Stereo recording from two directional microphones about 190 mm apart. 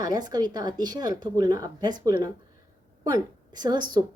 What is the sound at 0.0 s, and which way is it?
Speech, 20° right (ahead or behind).